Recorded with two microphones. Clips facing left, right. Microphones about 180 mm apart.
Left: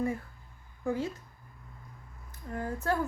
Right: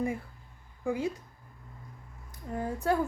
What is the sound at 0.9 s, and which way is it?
Speech, 15° right (ahead or behind).